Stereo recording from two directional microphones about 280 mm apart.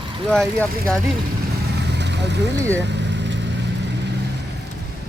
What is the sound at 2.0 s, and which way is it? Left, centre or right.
Vehicle, right.